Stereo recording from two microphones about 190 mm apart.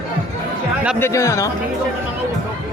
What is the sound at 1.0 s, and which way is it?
Speech, 15° left (ahead or behind).